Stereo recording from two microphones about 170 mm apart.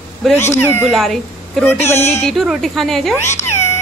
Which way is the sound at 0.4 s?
15° left (ahead or behind).